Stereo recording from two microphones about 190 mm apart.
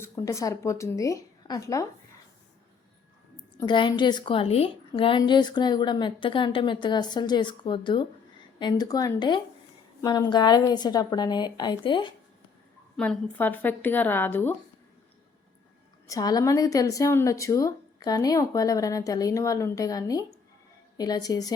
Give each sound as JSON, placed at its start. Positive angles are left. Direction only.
{"t": 0.0, "sound": "a woman's voice", "side_deg": 15}
{"t": 3.6, "sound": "a woman's voice", "side_deg": 25}
{"t": 13.0, "sound": "a woman's voice", "side_deg": 10}
{"t": 16.0, "sound": "a woman's voice", "side_deg": 20}